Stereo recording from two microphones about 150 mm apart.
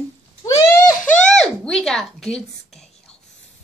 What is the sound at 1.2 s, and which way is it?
Speech, 5° left (ahead or behind).